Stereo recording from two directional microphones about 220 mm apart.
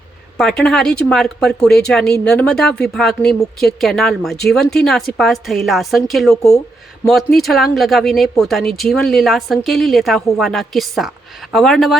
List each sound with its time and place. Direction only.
0.3 s speech: centre (ahead or behind)